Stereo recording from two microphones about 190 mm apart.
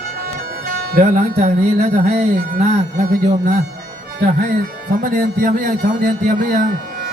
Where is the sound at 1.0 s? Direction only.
35° right (ahead or behind).